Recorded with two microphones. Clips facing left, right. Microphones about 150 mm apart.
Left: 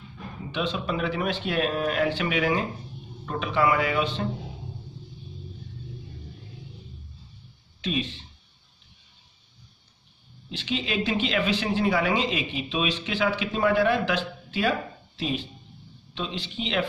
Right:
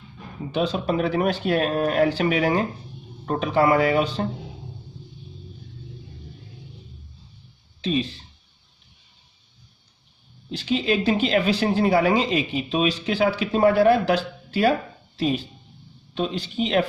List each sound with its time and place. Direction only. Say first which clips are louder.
0.5 s speech: right 5 dB; 40° right (ahead or behind)
7.8 s speech: right 5 dB; 35° right (ahead or behind)
10.5 s speech: right 6 dB; 40° right (ahead or behind)